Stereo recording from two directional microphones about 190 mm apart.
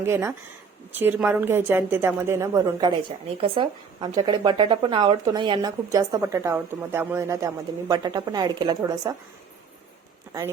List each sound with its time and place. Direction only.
0.0 s a woman's voice: 15° right (ahead or behind)